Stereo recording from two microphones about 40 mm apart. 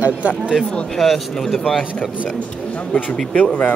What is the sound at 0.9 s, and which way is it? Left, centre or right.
Speech, centre.